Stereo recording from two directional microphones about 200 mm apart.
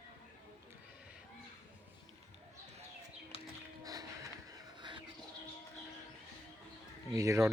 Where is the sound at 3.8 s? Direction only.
20° right (ahead or behind).